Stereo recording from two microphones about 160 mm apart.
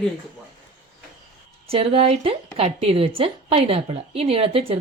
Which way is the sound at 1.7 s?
35° right (ahead or behind).